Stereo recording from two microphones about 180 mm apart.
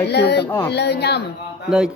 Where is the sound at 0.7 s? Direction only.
70° left (ahead or behind).